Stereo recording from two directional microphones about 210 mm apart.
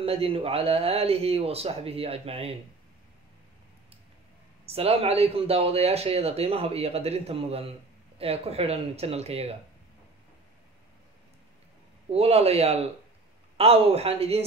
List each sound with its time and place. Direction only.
0.0 s speech: 25° right (ahead or behind)
4.6 s speech: 30° right (ahead or behind)
12.1 s speech: 30° right (ahead or behind)